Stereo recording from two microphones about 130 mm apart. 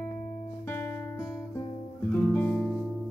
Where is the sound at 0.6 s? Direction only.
15° left (ahead or behind).